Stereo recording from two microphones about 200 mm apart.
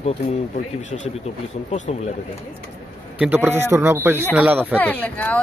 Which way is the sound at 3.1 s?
10° right (ahead or behind).